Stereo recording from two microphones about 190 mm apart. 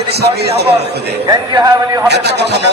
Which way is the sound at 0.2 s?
60° right (ahead or behind).